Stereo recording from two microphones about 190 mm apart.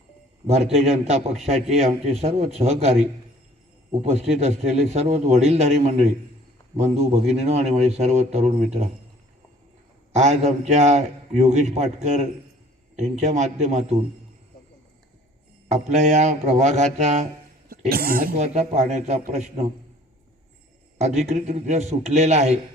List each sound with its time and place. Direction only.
0.4 s a man's voice: 35° right (ahead or behind)
4.0 s a man's voice: 35° right (ahead or behind)
10.2 s a man's voice: 35° right (ahead or behind)
15.7 s a man's voice: 35° right (ahead or behind)
17.7 s a man's voice: 50° right (ahead or behind); by 19.6 s 35° right (ahead or behind)
21.2 s a man's voice: 35° right (ahead or behind)